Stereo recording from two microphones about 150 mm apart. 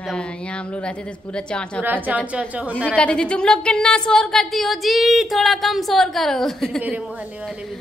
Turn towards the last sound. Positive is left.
turn(degrees=0)  # may be behind; listen again after turning